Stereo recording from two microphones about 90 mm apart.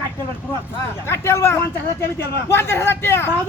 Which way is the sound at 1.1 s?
30° left (ahead or behind).